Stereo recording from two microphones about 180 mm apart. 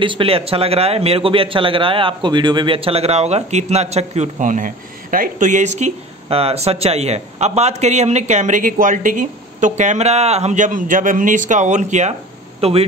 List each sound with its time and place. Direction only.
0.0 s a man's voice: 30° right (ahead or behind)